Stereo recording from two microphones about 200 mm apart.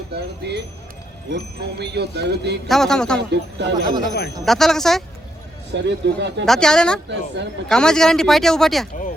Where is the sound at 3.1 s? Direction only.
60° right (ahead or behind).